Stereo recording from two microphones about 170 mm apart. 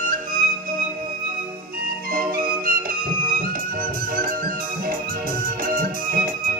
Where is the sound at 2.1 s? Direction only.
60° right (ahead or behind).